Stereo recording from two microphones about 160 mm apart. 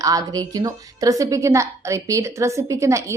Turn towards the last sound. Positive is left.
turn(degrees=-20)  # may be behind; listen again after turning